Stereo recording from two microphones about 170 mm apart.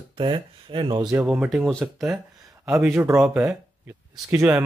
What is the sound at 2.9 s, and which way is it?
Speech, 15° right (ahead or behind).